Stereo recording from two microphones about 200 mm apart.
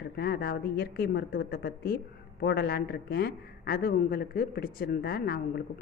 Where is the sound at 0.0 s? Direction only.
50° left (ahead or behind).